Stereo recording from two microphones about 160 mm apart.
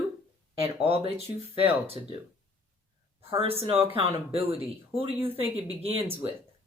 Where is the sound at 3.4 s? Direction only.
35° right (ahead or behind).